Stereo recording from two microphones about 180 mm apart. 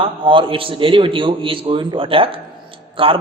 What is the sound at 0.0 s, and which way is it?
A man's voice, 30° right (ahead or behind).